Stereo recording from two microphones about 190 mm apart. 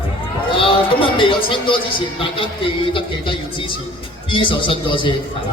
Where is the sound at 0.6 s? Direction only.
30° left (ahead or behind).